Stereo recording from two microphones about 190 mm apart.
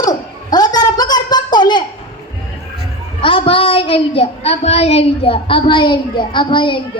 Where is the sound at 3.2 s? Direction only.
30° left (ahead or behind).